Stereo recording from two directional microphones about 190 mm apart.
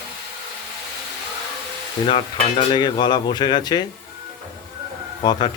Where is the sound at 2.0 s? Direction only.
25° left (ahead or behind).